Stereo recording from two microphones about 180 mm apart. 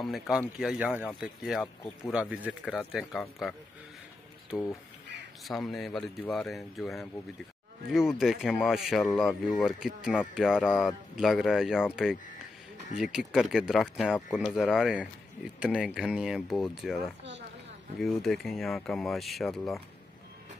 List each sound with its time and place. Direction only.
0.0 s speech: centre (ahead or behind)
5.4 s speech: centre (ahead or behind)